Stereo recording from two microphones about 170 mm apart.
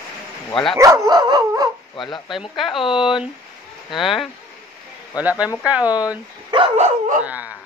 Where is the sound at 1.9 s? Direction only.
30° left (ahead or behind).